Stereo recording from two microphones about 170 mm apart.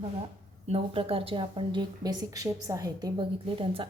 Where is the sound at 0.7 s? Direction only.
35° right (ahead or behind).